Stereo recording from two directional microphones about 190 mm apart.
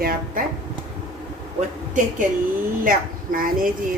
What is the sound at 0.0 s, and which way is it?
Speech, 50° right (ahead or behind).